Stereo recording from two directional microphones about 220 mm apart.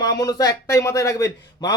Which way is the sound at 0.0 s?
15° left (ahead or behind).